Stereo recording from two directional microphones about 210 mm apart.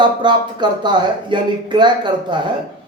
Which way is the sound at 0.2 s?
20° right (ahead or behind).